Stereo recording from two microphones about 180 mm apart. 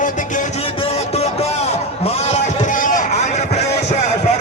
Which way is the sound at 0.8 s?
35° left (ahead or behind).